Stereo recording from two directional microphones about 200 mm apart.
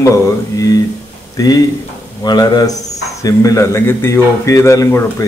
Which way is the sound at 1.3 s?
20° left (ahead or behind).